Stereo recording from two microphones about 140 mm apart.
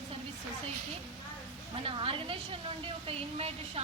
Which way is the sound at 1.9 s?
40° right (ahead or behind).